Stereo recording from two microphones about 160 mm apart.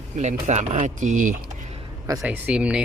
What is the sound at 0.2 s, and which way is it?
Speech, 45° right (ahead or behind).